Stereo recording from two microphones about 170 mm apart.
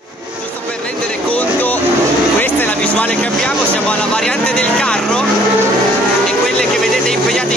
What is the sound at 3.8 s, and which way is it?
Vehicle, 5° left (ahead or behind).